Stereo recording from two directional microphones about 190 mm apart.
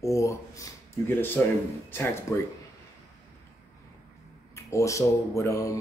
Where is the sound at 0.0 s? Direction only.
15° left (ahead or behind).